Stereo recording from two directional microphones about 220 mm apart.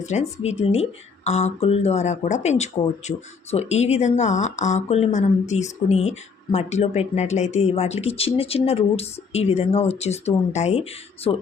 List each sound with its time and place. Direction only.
0.0 s speech: 30° left (ahead or behind)